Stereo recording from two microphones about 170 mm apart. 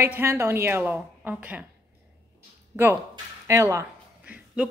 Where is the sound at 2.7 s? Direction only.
15° right (ahead or behind).